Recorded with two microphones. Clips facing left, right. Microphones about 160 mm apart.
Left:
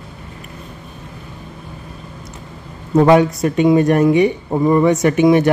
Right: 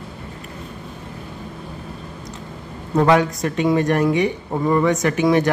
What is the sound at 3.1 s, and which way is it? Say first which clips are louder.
Speech: left 4 dB; 20° left (ahead or behind).